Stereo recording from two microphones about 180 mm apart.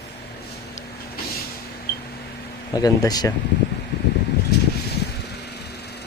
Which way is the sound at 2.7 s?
20° left (ahead or behind).